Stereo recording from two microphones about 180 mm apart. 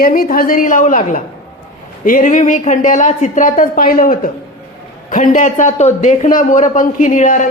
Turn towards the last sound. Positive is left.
turn(degrees=45)  # may be behind; listen again after turning